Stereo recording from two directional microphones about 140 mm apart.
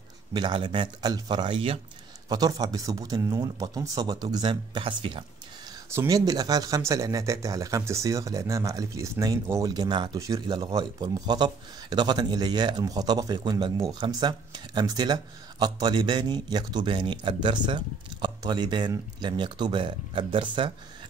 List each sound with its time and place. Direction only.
0.3 s a man's voice: 35° right (ahead or behind)
2.2 s speech: 30° right (ahead or behind)
5.9 s a man's voice: 20° right (ahead or behind)